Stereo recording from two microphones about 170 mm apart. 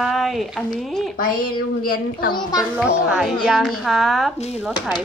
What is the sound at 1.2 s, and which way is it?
Speech, 55° left (ahead or behind).